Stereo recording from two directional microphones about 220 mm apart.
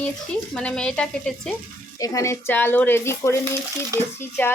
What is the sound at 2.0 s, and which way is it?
Speech, 15° left (ahead or behind).